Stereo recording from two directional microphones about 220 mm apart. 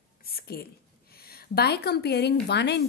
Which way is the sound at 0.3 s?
45° left (ahead or behind).